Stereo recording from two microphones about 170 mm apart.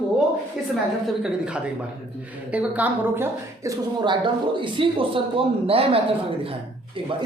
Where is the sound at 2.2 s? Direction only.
10° right (ahead or behind); by 7.1 s 30° right (ahead or behind).